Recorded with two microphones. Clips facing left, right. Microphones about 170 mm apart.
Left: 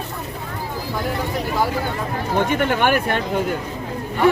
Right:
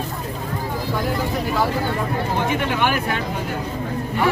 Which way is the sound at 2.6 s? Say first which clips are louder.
Left 3 dB; 50° left (ahead or behind).